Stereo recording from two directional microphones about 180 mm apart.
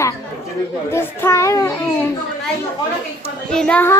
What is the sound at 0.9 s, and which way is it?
A child's voice, 15° left (ahead or behind).